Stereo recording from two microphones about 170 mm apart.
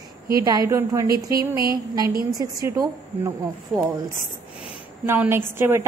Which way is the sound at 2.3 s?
20° right (ahead or behind).